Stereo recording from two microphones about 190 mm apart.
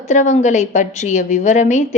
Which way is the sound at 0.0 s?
40° left (ahead or behind).